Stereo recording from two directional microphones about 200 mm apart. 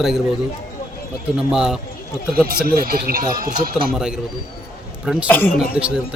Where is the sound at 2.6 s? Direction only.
45° right (ahead or behind).